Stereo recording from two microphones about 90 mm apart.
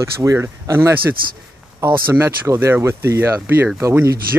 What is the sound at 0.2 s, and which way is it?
Speech, 30° right (ahead or behind).